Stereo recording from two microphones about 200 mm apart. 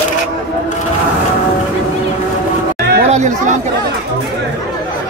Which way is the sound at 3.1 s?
35° right (ahead or behind).